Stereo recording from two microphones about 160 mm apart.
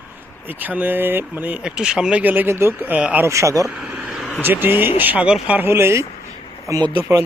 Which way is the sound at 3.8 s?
5° right (ahead or behind).